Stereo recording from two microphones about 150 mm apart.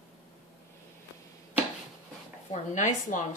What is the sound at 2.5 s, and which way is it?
Speech, 55° left (ahead or behind).